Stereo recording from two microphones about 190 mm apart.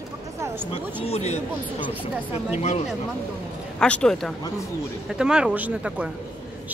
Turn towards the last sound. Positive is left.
turn(degrees=-10)  # may be behind; listen again after turning